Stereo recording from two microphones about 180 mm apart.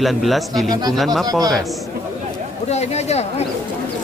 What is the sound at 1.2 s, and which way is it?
Speech, 20° right (ahead or behind).